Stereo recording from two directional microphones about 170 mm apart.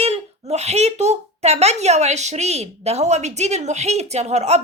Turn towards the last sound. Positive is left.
turn(degrees=-40)  # may be behind; listen again after turning